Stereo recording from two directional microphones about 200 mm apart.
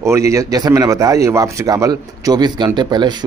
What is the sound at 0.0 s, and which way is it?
Speech, 15° right (ahead or behind).